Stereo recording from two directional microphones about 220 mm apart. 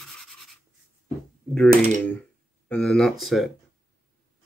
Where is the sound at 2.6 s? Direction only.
5° left (ahead or behind).